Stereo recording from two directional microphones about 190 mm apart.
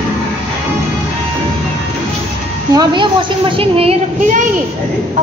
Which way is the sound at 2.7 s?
25° right (ahead or behind).